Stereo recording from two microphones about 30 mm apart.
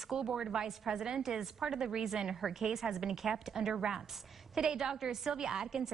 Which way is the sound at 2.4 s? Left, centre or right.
Centre.